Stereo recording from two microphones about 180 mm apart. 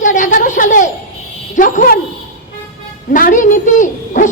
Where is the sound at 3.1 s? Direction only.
45° left (ahead or behind).